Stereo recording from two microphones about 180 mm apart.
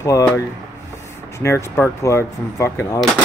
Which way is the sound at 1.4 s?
15° left (ahead or behind).